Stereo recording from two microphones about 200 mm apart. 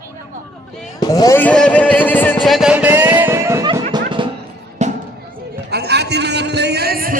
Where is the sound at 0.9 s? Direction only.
20° left (ahead or behind); by 3.7 s 15° right (ahead or behind).